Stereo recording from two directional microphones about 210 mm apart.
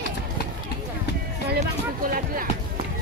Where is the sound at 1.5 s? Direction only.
40° right (ahead or behind).